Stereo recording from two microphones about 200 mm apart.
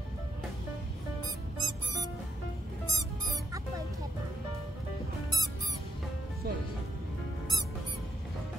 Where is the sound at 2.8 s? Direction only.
15° right (ahead or behind).